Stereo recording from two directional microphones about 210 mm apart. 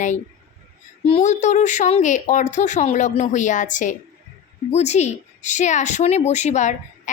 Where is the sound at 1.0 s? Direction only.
30° left (ahead or behind).